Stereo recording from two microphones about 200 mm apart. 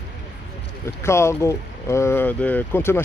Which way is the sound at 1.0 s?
15° left (ahead or behind).